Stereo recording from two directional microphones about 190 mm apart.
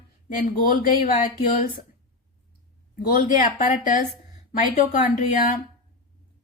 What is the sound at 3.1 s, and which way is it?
Speech, 40° left (ahead or behind).